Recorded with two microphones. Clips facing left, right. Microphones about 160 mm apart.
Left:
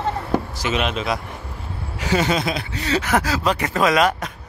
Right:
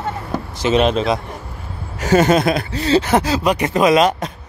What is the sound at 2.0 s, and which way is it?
Speech, 45° right (ahead or behind).